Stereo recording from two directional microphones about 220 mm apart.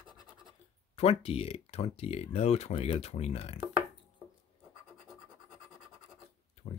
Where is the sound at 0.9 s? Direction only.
25° left (ahead or behind).